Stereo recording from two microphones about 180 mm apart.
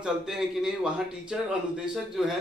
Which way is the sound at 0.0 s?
5° right (ahead or behind).